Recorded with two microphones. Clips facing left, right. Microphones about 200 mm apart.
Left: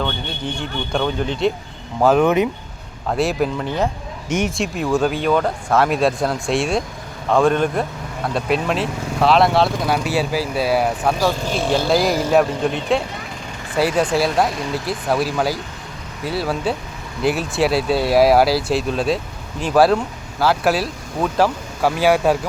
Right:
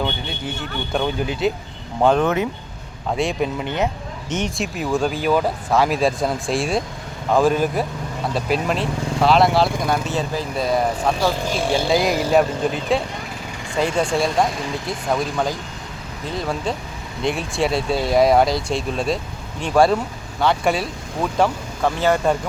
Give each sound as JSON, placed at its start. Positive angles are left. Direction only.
{"t": 0.9, "sound": "speech", "side_deg": -5}
{"t": 2.0, "sound": "speech", "side_deg": 5}
{"t": 3.1, "sound": "speech", "side_deg": 0}
{"t": 4.5, "sound": "speech", "side_deg": 0}